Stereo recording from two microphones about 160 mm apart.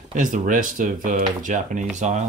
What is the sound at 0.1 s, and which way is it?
Speech, 55° right (ahead or behind).